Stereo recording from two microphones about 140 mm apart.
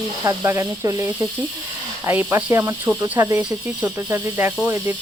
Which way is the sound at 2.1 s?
15° right (ahead or behind).